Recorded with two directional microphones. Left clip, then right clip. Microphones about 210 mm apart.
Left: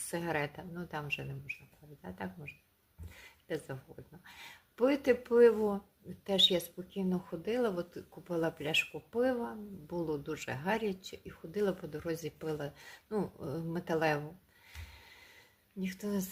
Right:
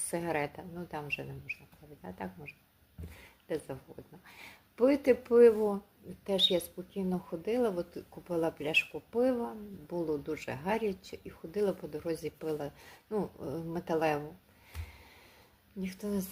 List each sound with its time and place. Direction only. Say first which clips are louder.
0.1 s speech: right 2 dB; 15° left (ahead or behind)
3.2 s a sound: right 2 dB; 15° left (ahead or behind)
4.3 s speech: even; 15° left (ahead or behind)
15.8 s speech: right 1 dB; 15° left (ahead or behind)